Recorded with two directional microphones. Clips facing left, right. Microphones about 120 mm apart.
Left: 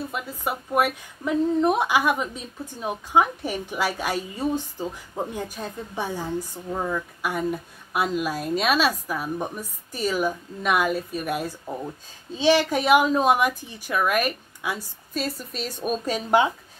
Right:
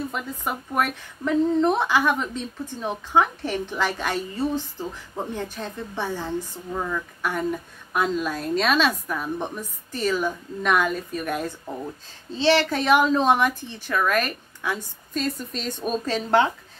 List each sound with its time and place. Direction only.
0.1 s a woman's voice: 5° left (ahead or behind)